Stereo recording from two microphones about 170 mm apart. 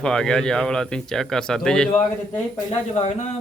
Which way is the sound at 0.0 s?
5° left (ahead or behind).